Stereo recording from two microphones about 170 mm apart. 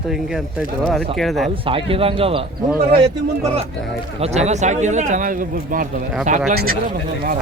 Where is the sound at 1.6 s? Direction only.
30° right (ahead or behind).